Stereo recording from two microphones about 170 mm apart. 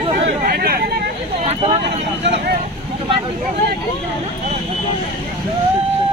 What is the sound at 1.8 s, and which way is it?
Speech, 90° right.